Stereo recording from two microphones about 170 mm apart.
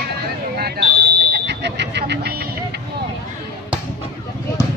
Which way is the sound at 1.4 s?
90° right.